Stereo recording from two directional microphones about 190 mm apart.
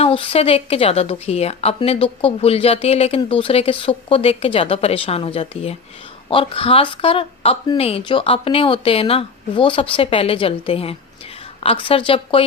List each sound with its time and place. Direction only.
0.0 s a woman's voice: 30° left (ahead or behind)